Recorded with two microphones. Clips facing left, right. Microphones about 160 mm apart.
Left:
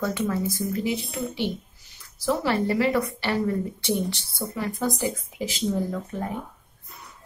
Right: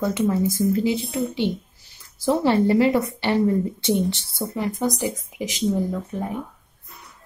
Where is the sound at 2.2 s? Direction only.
25° right (ahead or behind).